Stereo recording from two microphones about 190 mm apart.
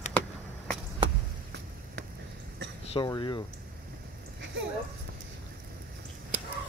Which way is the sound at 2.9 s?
25° left (ahead or behind).